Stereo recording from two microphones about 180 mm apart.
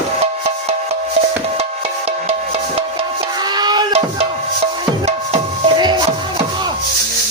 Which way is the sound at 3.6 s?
25° right (ahead or behind).